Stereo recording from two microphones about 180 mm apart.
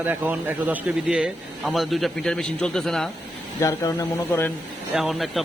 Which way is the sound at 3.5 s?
20° left (ahead or behind).